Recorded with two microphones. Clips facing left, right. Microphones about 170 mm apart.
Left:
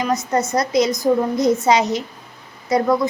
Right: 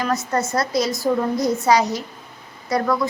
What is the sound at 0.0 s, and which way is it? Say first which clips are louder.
A woman's voice: left 2 dB; 20° left (ahead or behind).